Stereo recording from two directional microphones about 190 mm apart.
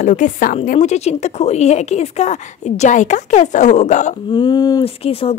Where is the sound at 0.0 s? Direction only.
40° left (ahead or behind).